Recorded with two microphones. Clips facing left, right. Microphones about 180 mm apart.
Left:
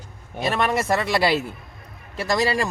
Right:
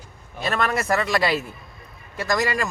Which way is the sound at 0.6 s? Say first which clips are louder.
Even; 25° left (ahead or behind).